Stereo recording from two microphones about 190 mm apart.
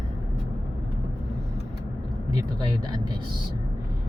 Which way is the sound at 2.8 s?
20° right (ahead or behind).